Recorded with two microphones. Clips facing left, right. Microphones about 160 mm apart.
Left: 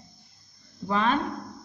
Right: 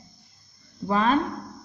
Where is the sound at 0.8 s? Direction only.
40° right (ahead or behind).